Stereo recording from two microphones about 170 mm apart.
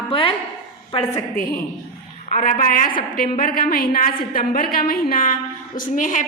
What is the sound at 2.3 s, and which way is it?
A woman's voice, 50° left (ahead or behind).